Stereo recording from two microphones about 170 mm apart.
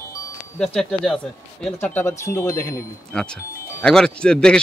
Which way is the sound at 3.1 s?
5° left (ahead or behind).